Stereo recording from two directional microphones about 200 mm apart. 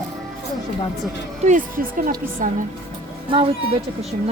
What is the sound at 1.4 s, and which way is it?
A woman's voice, 40° right (ahead or behind).